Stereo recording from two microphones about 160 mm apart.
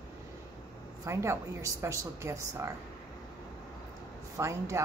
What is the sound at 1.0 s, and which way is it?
Speech, 20° right (ahead or behind).